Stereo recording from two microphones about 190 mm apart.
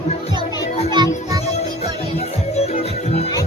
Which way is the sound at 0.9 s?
20° right (ahead or behind).